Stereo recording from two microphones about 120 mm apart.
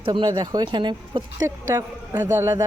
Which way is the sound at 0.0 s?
40° right (ahead or behind).